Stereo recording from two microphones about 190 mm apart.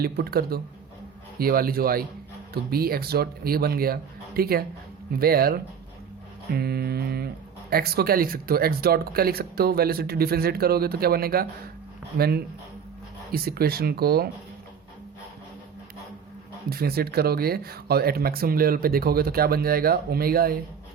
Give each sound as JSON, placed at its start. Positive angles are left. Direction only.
{"t": 0.0, "sound": "speech", "side_deg": -55}
{"t": 6.5, "sound": "mantra", "side_deg": -55}
{"t": 7.7, "sound": "speech", "side_deg": -55}
{"t": 12.1, "sound": "mantra", "side_deg": -55}
{"t": 13.3, "sound": "speech", "side_deg": -55}
{"t": 16.6, "sound": "speech", "side_deg": -55}